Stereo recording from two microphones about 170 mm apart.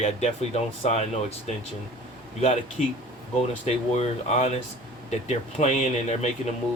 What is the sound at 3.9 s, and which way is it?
Speech, 40° left (ahead or behind).